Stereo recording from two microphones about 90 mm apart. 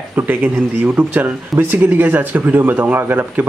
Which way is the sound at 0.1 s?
20° right (ahead or behind).